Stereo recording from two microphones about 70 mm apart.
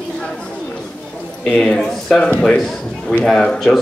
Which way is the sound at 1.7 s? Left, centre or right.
Centre.